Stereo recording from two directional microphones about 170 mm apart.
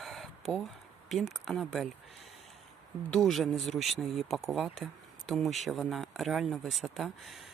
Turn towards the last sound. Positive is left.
turn(degrees=0)  # may be behind; listen again after turning